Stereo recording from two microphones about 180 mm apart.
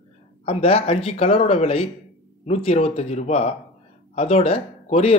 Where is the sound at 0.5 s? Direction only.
35° left (ahead or behind).